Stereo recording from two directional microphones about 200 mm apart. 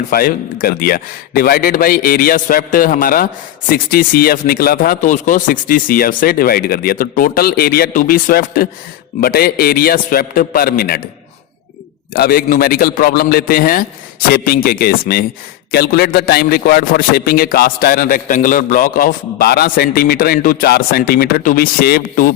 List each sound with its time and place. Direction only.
0.1 s a man's voice: 45° left (ahead or behind)
12.1 s a man's voice: 50° left (ahead or behind)